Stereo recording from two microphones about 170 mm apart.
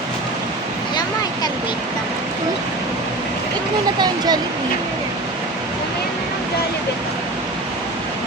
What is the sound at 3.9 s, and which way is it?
Speech, 25° right (ahead or behind).